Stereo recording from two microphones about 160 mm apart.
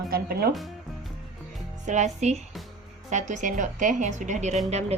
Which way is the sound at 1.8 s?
45° right (ahead or behind).